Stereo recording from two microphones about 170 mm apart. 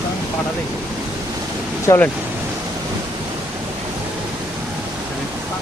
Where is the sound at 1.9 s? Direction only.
10° left (ahead or behind).